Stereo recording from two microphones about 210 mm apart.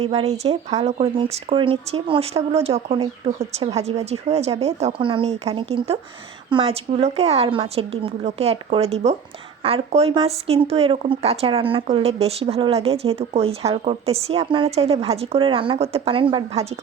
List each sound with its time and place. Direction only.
0.0 s speech: 30° right (ahead or behind)